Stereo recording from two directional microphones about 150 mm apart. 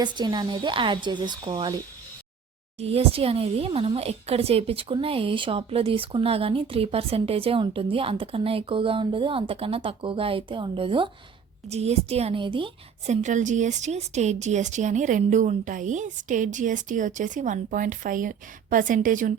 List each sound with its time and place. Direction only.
0.0 s speech: 30° right (ahead or behind)
2.7 s speech: 40° right (ahead or behind)
11.7 s a woman's voice: 45° right (ahead or behind)
13.1 s speech: 55° right (ahead or behind)